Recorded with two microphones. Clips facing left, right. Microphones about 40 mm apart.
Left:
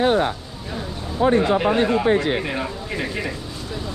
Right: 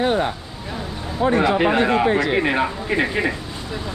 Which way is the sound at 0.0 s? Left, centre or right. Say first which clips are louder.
Left 1 dB; centre.